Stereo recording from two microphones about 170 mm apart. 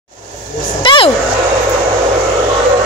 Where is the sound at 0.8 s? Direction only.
30° left (ahead or behind).